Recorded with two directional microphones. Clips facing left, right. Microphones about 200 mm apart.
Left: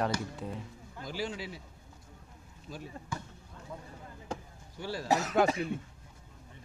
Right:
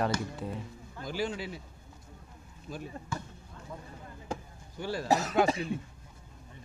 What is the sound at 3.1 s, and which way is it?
Speech, 15° left (ahead or behind).